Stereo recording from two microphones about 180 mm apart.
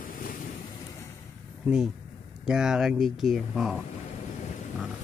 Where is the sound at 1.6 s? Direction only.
5° right (ahead or behind).